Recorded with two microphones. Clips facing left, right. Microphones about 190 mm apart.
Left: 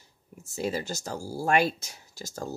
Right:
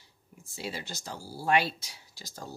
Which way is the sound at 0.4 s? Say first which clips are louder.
Left 8 dB; 45° left (ahead or behind).